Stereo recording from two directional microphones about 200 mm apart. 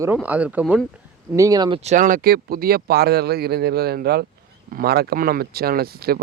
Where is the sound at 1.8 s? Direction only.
35° right (ahead or behind).